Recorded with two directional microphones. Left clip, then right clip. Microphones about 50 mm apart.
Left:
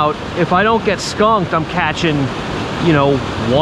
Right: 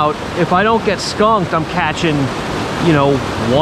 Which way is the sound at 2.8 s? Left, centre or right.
Right.